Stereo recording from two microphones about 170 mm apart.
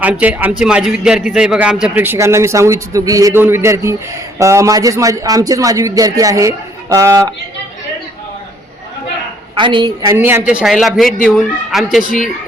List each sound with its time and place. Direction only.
0.0 s a man's voice: 10° right (ahead or behind)
9.6 s a man's voice: 30° right (ahead or behind)
10.1 s speech: 15° right (ahead or behind)